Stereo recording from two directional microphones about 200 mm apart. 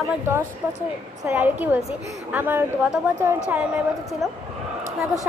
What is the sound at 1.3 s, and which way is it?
A woman's voice, 10° right (ahead or behind).